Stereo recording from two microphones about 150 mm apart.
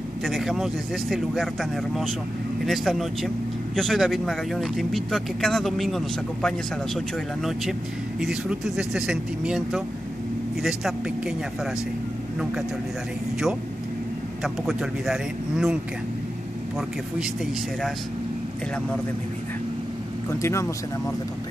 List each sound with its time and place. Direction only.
0.2 s speech: centre (ahead or behind)
8.2 s speech: 5° right (ahead or behind)
14.4 s speech: centre (ahead or behind)
20.2 s speech: 15° left (ahead or behind)